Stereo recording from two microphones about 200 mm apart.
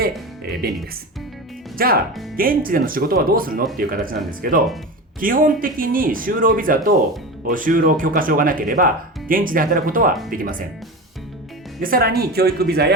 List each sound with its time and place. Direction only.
0.6 s speech: 50° right (ahead or behind)
1.8 s speech: 45° right (ahead or behind)
11.8 s speech: 45° right (ahead or behind)